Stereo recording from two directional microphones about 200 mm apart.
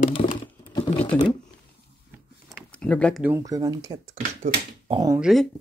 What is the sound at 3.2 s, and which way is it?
Speech, 15° right (ahead or behind).